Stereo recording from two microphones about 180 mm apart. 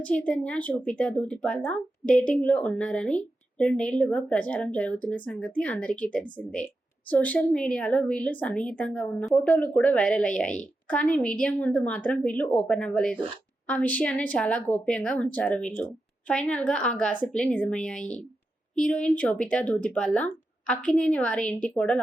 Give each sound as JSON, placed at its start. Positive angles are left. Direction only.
{"t": 0.0, "sound": "a woman's voice", "side_deg": 5}